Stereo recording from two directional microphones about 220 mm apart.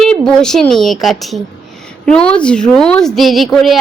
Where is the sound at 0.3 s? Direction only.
5° left (ahead or behind).